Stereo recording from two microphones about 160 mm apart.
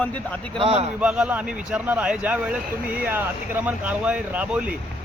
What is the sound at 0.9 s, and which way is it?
Speech, 5° right (ahead or behind).